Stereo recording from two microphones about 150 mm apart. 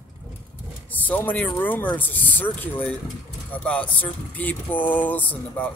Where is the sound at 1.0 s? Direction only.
10° left (ahead or behind).